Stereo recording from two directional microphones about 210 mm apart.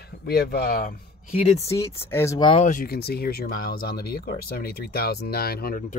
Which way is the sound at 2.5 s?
35° left (ahead or behind).